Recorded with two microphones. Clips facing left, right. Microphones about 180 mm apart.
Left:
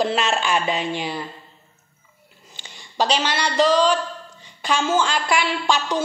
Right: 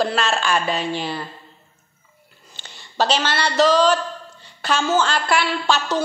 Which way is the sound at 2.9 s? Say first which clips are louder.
Right 1 dB; 15° left (ahead or behind).